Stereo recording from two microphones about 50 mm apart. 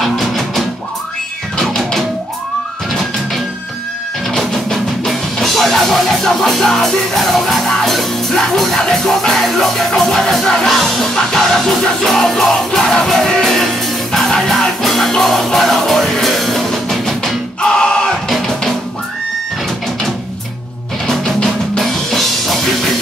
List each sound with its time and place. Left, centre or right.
0.0 s music: centre
4.4 s music: centre
17.6 s a sound: centre
18.3 s music: centre
21.7 s music: centre